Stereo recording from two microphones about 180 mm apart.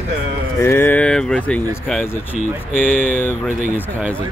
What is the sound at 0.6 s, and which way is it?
Speech, 15° left (ahead or behind).